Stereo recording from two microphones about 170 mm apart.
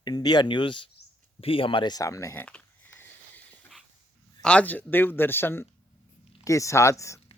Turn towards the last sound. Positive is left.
turn(degrees=20)  # may be behind; listen again after turning